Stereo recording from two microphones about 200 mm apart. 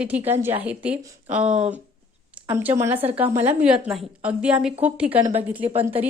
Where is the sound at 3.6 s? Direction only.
5° right (ahead or behind).